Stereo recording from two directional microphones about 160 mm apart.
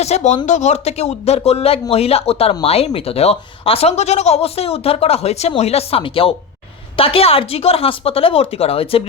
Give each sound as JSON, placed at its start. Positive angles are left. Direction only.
{"t": 0.0, "sound": "speech", "side_deg": 45}